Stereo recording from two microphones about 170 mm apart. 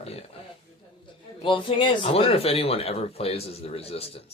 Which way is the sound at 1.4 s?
30° left (ahead or behind).